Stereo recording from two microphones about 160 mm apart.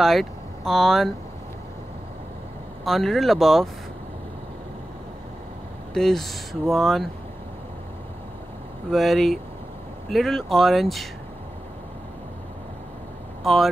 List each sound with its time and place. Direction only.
0.0 s speech: centre (ahead or behind)
2.8 s speech: centre (ahead or behind)
5.9 s speech: centre (ahead or behind)
8.9 s speech: centre (ahead or behind)
13.4 s speech: centre (ahead or behind)